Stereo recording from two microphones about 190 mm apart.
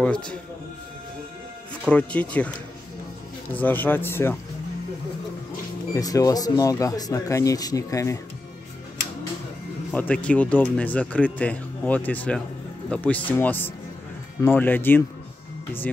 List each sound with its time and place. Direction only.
0.0 s speech: 5° left (ahead or behind)
1.9 s speech: 5° left (ahead or behind)
3.5 s speech: 10° left (ahead or behind)
5.9 s speech: 20° left (ahead or behind)
9.9 s speech: 5° left (ahead or behind)